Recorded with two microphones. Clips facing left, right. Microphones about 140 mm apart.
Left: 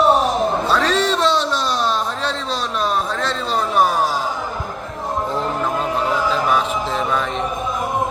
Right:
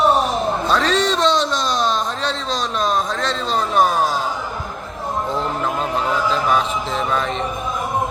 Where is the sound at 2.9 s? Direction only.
10° left (ahead or behind).